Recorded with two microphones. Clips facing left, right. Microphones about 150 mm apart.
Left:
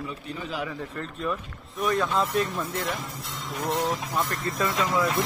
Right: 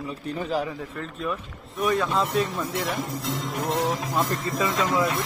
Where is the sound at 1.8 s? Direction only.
5° right (ahead or behind).